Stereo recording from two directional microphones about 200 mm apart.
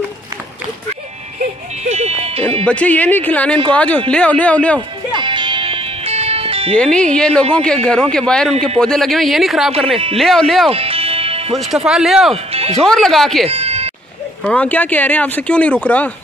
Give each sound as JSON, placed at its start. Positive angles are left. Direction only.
{"t": 1.4, "sound": "music", "side_deg": -35}
{"t": 2.6, "sound": "speech", "side_deg": 5}
{"t": 4.7, "sound": "music", "side_deg": -25}
{"t": 6.7, "sound": "a man's voice", "side_deg": 5}
{"t": 10.7, "sound": "music", "side_deg": -30}
{"t": 11.7, "sound": "a man's voice", "side_deg": 0}
{"t": 12.4, "sound": "music", "side_deg": -30}
{"t": 12.7, "sound": "a man's voice", "side_deg": 0}
{"t": 13.5, "sound": "music", "side_deg": -30}
{"t": 14.4, "sound": "speech", "side_deg": 5}